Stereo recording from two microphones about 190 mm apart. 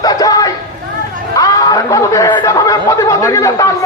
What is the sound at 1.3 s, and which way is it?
Chatter, 20° left (ahead or behind).